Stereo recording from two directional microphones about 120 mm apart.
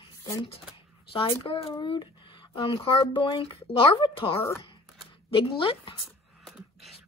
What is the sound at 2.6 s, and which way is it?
Speech, 45° left (ahead or behind).